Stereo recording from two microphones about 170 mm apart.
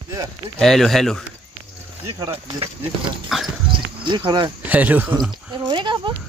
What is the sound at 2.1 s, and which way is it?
Speech, 20° right (ahead or behind).